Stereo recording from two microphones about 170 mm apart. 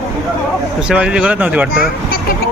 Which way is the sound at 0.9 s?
5° right (ahead or behind).